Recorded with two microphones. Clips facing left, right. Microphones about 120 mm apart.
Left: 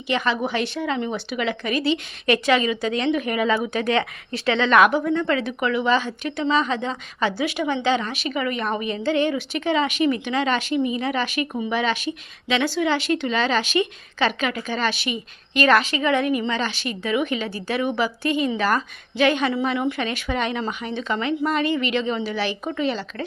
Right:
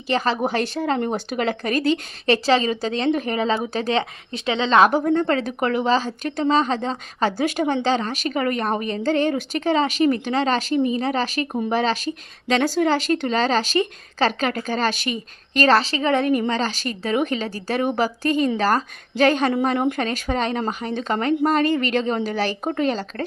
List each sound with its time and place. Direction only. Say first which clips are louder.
0.1 s a woman's voice: right 2 dB; 35° right (ahead or behind)
4.9 s a woman's voice: right 2 dB; 45° right (ahead or behind)